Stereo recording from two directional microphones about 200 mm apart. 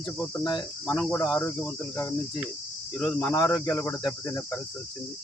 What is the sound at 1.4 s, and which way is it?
Cricket, 10° left (ahead or behind).